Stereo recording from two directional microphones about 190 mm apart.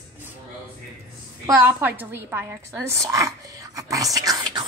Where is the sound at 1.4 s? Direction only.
10° right (ahead or behind).